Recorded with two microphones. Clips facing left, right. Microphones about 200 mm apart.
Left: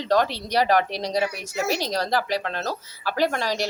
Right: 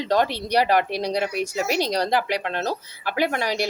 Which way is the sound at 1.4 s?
15° right (ahead or behind).